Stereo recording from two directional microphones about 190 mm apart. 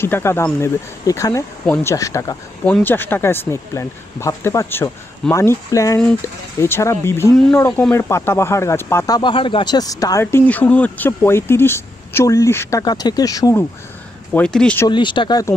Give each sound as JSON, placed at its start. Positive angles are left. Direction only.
{"t": 0.0, "sound": "speech", "side_deg": 15}
{"t": 14.3, "sound": "speech", "side_deg": 5}
{"t": 14.9, "sound": "speech", "side_deg": 25}